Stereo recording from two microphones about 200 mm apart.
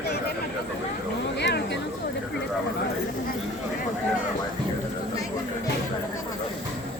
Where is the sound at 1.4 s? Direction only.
60° left (ahead or behind).